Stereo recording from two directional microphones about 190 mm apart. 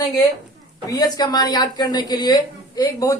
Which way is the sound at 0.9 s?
20° left (ahead or behind).